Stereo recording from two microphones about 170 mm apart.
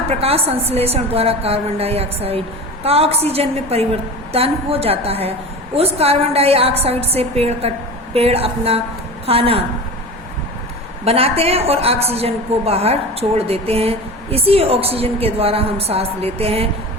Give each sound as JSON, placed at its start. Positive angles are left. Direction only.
{"t": 0.1, "sound": "a woman's voice", "side_deg": -35}
{"t": 11.0, "sound": "a woman's voice", "side_deg": -35}